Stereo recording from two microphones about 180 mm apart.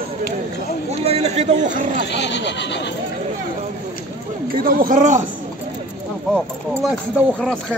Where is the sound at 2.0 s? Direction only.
70° left (ahead or behind).